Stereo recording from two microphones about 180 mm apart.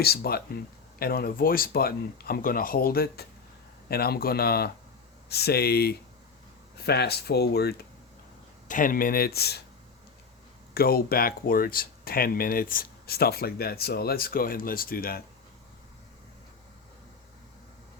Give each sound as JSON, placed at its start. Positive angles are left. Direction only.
{"t": 0.0, "sound": "speech", "side_deg": 60}
{"t": 8.6, "sound": "speech", "side_deg": 45}
{"t": 10.8, "sound": "speech", "side_deg": 55}